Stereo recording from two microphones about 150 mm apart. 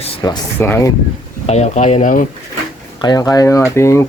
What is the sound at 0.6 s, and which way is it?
Speech, 15° left (ahead or behind).